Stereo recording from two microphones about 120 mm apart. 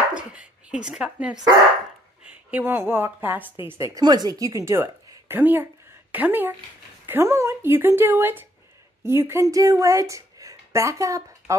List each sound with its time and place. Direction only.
0.7 s a woman's voice: 5° right (ahead or behind)
2.5 s a woman's voice: 20° right (ahead or behind)
4.0 s a woman's voice: 35° right (ahead or behind)